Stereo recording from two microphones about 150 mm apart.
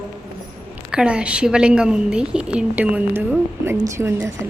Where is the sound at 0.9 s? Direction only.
5° right (ahead or behind).